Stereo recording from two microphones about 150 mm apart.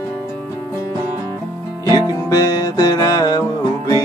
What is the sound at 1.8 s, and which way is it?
Music, 25° left (ahead or behind).